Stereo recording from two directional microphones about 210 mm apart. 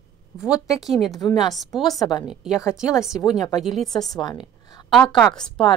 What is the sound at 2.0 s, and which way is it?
Speech, 20° left (ahead or behind).